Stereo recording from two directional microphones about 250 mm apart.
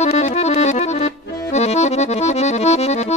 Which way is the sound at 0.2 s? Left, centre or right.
Left.